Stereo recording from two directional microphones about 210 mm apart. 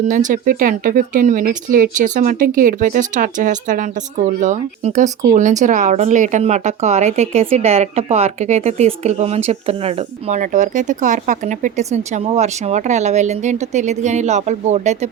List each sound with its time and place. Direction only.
0.1 s speech: 40° right (ahead or behind)